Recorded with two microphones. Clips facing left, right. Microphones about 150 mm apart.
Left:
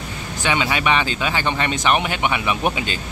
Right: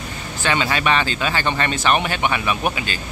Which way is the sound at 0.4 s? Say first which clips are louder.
Even; 15° left (ahead or behind).